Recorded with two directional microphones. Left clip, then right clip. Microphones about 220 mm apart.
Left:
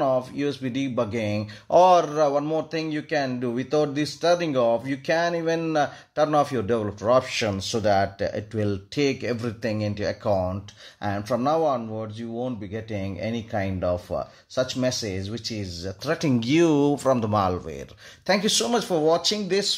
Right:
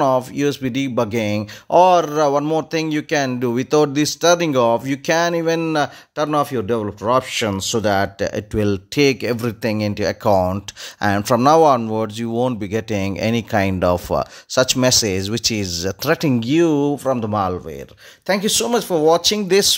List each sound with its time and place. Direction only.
0.0 s speech: 40° right (ahead or behind); by 17.6 s 15° right (ahead or behind)
18.2 s speech: 25° right (ahead or behind)